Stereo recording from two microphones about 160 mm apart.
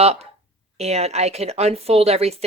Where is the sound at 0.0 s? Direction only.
40° right (ahead or behind).